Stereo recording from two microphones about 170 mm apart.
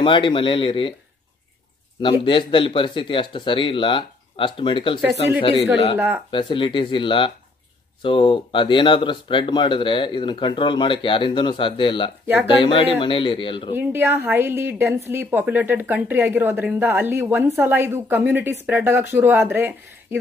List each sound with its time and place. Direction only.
0.0 s speech: 30° left (ahead or behind)
2.2 s speech: 30° left (ahead or behind)
5.9 s speech: 10° right (ahead or behind)
6.3 s speech: 30° left (ahead or behind)
13.7 s speech: 10° right (ahead or behind)